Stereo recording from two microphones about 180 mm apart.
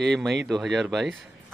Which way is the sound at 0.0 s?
Centre (ahead or behind).